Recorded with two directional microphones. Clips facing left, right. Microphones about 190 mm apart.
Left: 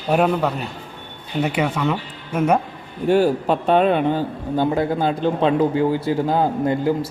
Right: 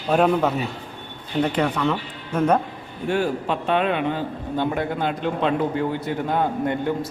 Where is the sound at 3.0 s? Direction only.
35° left (ahead or behind).